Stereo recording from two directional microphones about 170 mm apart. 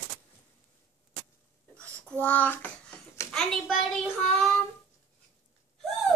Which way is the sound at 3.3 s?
5° left (ahead or behind).